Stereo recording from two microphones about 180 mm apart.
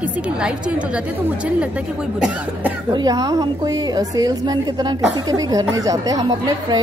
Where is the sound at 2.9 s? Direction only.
20° right (ahead or behind).